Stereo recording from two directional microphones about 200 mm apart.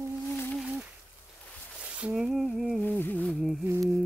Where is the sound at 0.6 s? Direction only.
10° right (ahead or behind).